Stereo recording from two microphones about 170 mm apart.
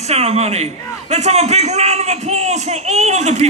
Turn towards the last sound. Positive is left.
turn(degrees=-40)  # may be behind; listen again after turning